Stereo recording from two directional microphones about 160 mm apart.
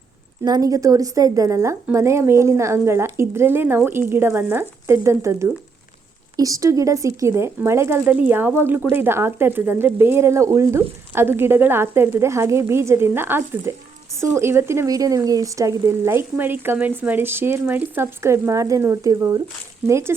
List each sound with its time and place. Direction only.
0.4 s speech: 25° right (ahead or behind)